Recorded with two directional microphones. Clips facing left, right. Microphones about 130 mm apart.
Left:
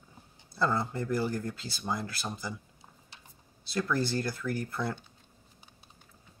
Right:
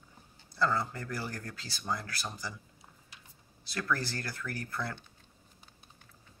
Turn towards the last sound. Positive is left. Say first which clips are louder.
# left 5 dB
turn(degrees=15)  # may be behind; listen again after turning